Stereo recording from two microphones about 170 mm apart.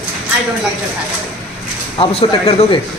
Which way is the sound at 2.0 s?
35° left (ahead or behind).